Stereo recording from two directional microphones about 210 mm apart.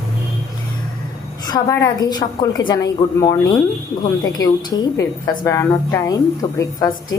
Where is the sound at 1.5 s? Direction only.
15° left (ahead or behind).